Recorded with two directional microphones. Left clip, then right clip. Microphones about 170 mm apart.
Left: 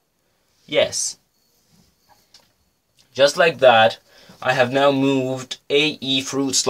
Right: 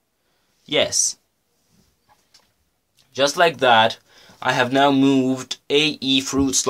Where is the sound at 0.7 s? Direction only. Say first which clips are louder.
Left 1 dB; 30° right (ahead or behind).